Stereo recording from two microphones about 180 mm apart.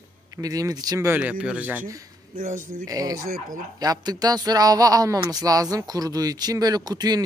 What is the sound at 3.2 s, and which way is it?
Speech, 50° right (ahead or behind).